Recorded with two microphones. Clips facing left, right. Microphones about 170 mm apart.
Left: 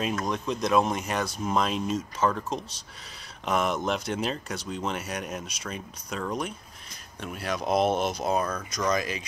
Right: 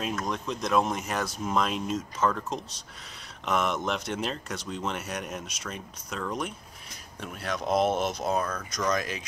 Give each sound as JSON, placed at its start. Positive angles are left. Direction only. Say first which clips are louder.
{"t": 0.0, "sound": "speech", "louder": "left 2 dB", "side_deg": 0}